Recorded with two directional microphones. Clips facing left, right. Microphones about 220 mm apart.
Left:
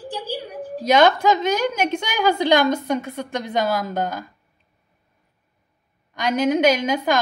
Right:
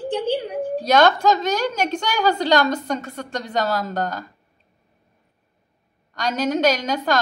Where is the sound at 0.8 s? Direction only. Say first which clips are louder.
Left 1 dB; 10° left (ahead or behind).